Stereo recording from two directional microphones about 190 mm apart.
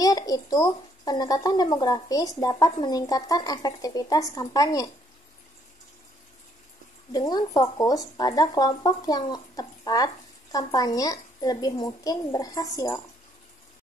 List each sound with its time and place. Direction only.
0.0 s speech: 20° left (ahead or behind)
7.1 s speech: 20° left (ahead or behind)